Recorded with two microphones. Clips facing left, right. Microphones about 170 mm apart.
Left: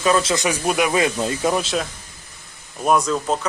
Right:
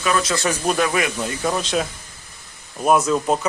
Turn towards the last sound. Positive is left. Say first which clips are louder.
# right 2 dB
turn(degrees=-5)  # may be behind; listen again after turning